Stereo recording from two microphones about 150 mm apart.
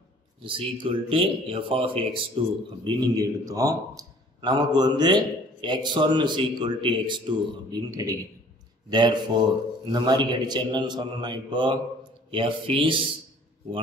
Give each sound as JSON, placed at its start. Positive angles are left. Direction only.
{"t": 0.4, "sound": "a man's voice", "side_deg": -35}
{"t": 7.9, "sound": "a man's voice", "side_deg": -20}